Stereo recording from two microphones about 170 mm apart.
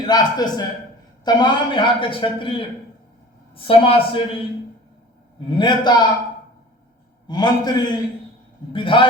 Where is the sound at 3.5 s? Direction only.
30° left (ahead or behind).